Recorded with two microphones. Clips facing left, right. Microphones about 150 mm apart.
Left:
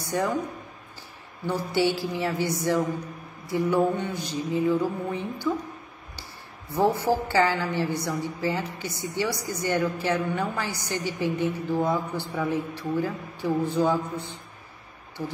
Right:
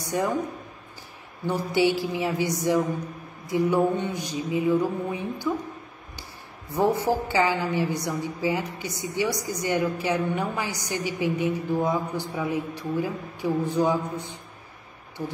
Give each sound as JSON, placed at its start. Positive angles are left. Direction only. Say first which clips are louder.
{"t": 0.0, "sound": "speech", "louder": "right 1 dB", "side_deg": -15}
{"t": 1.5, "sound": "a woman's voice", "louder": "right 2 dB", "side_deg": -20}
{"t": 6.7, "sound": "a woman's voice", "louder": "even", "side_deg": -20}